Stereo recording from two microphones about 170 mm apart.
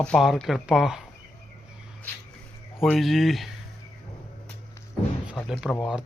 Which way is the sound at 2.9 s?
Centre (ahead or behind).